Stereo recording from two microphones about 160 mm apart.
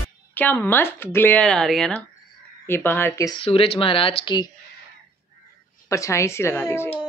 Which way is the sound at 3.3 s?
35° left (ahead or behind).